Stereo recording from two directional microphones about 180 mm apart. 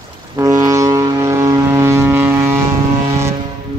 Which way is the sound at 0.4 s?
20° right (ahead or behind).